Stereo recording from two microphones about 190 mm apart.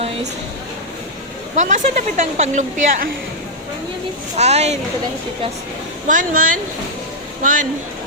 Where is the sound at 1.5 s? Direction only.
40° right (ahead or behind).